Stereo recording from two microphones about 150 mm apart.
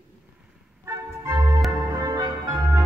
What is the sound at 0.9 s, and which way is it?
Organ, 20° right (ahead or behind).